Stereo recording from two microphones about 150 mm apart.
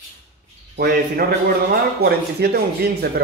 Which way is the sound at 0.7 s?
90° right.